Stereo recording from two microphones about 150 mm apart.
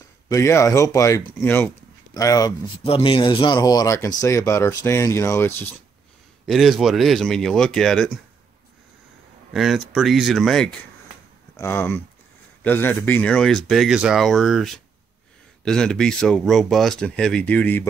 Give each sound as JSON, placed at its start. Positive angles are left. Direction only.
{"t": 0.3, "sound": "speech", "side_deg": 20}
{"t": 2.8, "sound": "speech", "side_deg": 35}
{"t": 6.4, "sound": "speech", "side_deg": 0}
{"t": 9.5, "sound": "speech", "side_deg": 0}
{"t": 11.5, "sound": "speech", "side_deg": 15}